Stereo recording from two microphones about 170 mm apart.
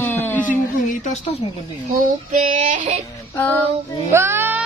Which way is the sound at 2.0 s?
45° right (ahead or behind).